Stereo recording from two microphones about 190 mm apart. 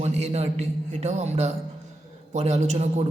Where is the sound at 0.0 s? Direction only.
35° right (ahead or behind).